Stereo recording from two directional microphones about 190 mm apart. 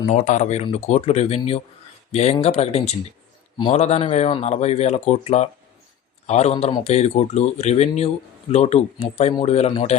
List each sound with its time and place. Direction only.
0.1 s speech: 40° left (ahead or behind)